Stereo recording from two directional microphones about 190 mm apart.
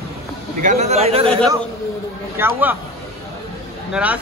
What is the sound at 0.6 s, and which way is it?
Speech, 40° right (ahead or behind).